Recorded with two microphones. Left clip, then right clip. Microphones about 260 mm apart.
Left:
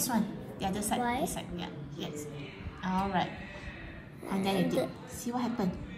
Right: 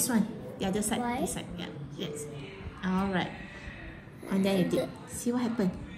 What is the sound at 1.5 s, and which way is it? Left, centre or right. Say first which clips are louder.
A woman's voice: right 1 dB; left.